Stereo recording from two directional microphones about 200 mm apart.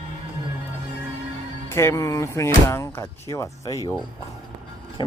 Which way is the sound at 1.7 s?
15° left (ahead or behind).